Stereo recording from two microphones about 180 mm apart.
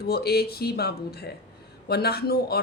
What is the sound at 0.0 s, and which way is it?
Speech, 60° left (ahead or behind).